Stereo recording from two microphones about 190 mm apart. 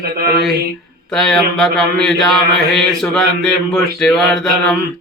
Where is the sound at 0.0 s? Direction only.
55° right (ahead or behind).